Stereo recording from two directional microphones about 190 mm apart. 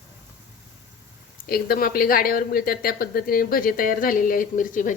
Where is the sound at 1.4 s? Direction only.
50° left (ahead or behind).